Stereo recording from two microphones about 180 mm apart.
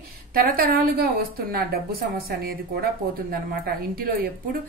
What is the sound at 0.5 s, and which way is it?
A woman's voice, 55° right (ahead or behind).